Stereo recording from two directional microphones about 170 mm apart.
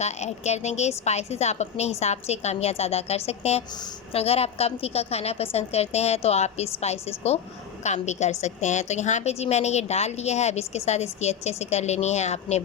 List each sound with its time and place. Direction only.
0.0 s a woman's voice: 40° left (ahead or behind)